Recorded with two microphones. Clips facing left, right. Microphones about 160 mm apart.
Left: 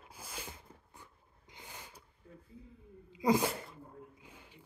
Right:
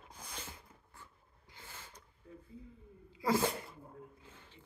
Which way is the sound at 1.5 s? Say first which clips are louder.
Left 2 dB; 15° left (ahead or behind).